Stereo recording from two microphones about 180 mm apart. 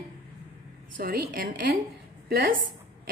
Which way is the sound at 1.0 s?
55° right (ahead or behind).